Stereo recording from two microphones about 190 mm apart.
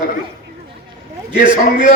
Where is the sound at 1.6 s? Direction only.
50° left (ahead or behind).